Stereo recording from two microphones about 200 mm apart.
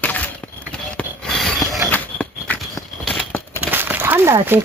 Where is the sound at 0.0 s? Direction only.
10° left (ahead or behind).